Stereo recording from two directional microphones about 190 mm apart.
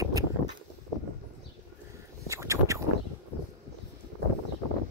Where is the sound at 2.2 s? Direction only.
15° right (ahead or behind).